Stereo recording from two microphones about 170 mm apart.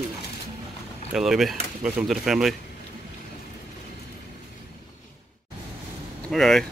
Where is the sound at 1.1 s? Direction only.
Centre (ahead or behind).